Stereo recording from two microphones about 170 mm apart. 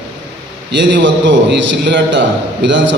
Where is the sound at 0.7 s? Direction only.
90° right.